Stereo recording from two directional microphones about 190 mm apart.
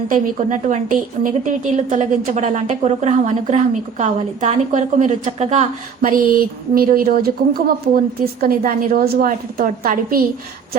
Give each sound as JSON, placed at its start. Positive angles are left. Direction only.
{"t": 0.1, "sound": "a woman's voice", "side_deg": -40}